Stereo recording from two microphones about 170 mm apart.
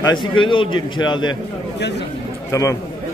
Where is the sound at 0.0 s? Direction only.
25° left (ahead or behind).